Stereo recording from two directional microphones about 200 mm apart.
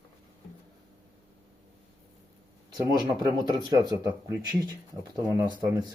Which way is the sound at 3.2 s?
20° right (ahead or behind).